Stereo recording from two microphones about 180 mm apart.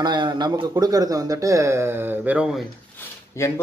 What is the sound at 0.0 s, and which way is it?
Speech, 25° right (ahead or behind).